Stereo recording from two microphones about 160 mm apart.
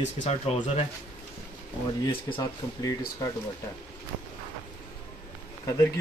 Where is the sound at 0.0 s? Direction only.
45° left (ahead or behind).